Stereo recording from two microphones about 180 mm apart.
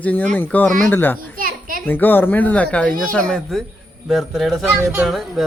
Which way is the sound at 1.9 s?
10° left (ahead or behind).